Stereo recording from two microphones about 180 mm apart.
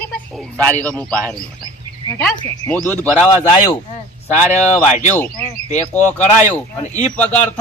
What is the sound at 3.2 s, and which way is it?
Speech, 25° left (ahead or behind).